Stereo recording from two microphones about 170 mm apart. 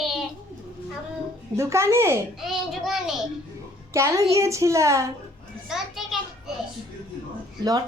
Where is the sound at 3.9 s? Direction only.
15° right (ahead or behind).